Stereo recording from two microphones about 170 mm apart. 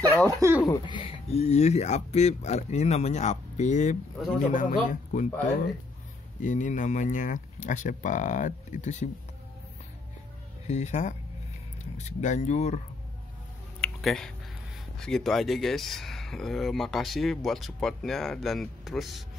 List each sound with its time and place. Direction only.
0.3 s speech: 15° right (ahead or behind)
0.6 s speech: 20° left (ahead or behind); by 5.3 s 45° left (ahead or behind)
6.4 s speech: 50° left (ahead or behind)
10.7 s speech: 40° left (ahead or behind)
13.7 s a sound: 5° left (ahead or behind)
15.0 s speech: 5° left (ahead or behind)